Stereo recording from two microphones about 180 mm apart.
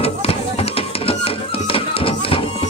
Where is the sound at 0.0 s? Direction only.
35° left (ahead or behind).